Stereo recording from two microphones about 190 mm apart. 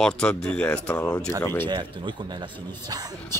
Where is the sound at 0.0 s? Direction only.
5° left (ahead or behind).